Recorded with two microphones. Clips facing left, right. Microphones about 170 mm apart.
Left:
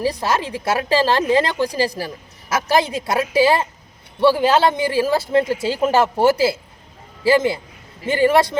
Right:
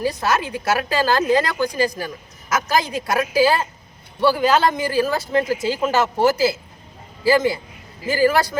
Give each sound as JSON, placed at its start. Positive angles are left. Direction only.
{"t": 0.0, "sound": "a woman's voice", "side_deg": 30}